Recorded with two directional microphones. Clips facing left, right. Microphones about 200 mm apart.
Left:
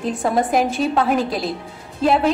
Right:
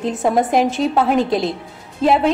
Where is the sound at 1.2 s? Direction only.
25° right (ahead or behind).